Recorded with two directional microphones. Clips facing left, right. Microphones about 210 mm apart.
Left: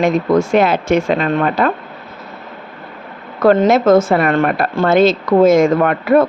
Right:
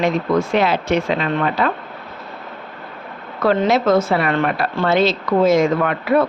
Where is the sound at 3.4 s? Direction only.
50° left (ahead or behind).